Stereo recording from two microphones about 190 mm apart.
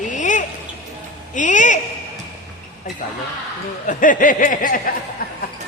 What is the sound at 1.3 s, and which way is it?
Speech, 40° left (ahead or behind).